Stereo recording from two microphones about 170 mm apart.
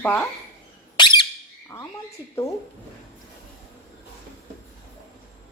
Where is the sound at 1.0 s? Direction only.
25° left (ahead or behind).